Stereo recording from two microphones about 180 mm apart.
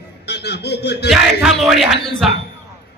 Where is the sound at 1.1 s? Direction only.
Centre (ahead or behind).